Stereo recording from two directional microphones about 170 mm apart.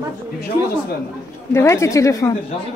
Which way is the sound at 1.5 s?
15° left (ahead or behind).